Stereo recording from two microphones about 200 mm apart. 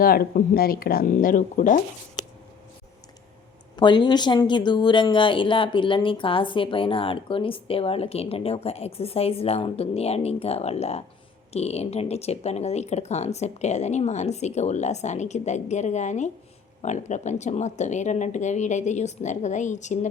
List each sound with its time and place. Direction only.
0.0 s speech: 50° left (ahead or behind)
3.8 s speech: 20° left (ahead or behind)